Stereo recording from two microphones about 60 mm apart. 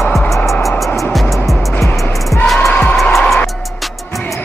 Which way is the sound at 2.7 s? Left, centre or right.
Left.